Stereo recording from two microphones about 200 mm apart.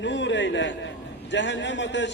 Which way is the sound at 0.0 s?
65° left (ahead or behind).